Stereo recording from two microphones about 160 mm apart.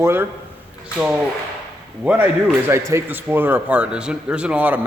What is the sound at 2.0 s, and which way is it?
A man's voice, 10° right (ahead or behind).